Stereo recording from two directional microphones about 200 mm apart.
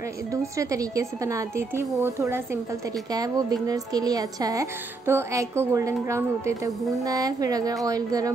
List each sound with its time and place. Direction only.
0.3 s a woman's voice: 15° right (ahead or behind)